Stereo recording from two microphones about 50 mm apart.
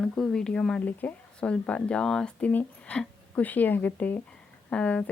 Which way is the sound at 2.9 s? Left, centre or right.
Left.